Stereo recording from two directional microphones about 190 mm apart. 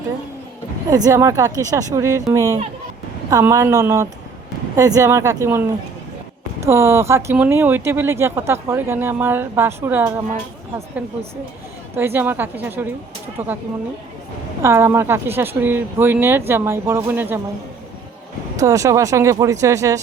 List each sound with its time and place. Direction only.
0.9 s speech: 15° right (ahead or behind)
6.7 s speech: 15° right (ahead or behind)
11.9 s speech: 10° right (ahead or behind)
14.6 s speech: 15° right (ahead or behind)
18.6 s speech: 15° right (ahead or behind)